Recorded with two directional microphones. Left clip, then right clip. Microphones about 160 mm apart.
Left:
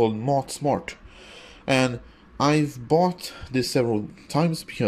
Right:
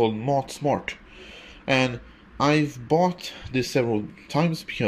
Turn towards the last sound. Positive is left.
turn(degrees=15)  # may be behind; listen again after turning